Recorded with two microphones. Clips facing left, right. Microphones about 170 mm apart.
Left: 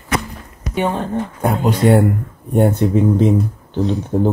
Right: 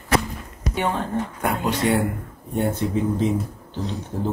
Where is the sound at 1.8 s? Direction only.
50° left (ahead or behind).